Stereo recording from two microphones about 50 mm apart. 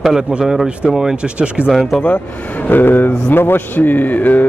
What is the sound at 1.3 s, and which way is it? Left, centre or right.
Speech, right.